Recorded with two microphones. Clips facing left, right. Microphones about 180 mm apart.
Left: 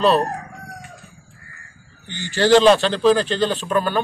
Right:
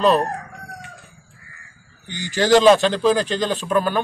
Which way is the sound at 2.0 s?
10° right (ahead or behind).